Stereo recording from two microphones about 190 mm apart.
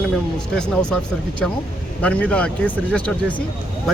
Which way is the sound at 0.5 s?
5° left (ahead or behind).